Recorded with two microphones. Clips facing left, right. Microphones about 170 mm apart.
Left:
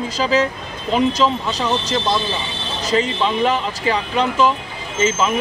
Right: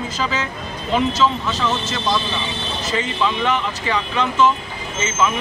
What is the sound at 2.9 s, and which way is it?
Speech, 30° left (ahead or behind).